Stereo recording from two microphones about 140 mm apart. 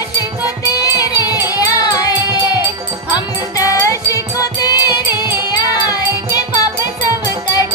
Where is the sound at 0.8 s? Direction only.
25° left (ahead or behind).